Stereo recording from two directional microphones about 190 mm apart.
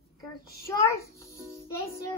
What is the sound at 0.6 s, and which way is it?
Speech, 15° left (ahead or behind).